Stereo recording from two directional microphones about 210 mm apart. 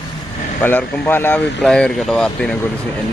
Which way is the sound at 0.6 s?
10° left (ahead or behind).